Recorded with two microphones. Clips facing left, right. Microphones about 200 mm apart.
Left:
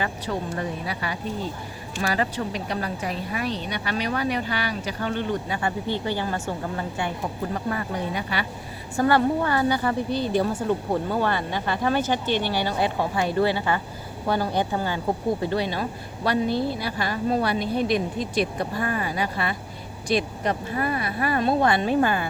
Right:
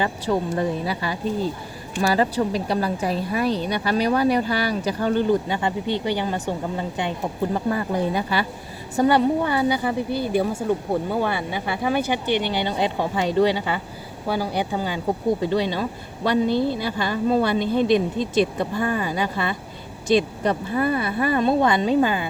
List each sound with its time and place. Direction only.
0.0 s a woman's voice: 30° right (ahead or behind)
5.5 s a woman's voice: 20° right (ahead or behind)
7.5 s a woman's voice: 30° right (ahead or behind)
9.0 s a woman's voice: 20° right (ahead or behind)